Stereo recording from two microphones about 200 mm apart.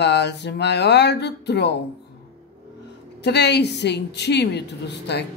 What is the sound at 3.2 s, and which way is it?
Speech, 55° left (ahead or behind).